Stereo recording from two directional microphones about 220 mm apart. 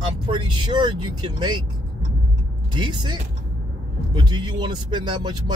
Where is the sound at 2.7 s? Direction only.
20° right (ahead or behind).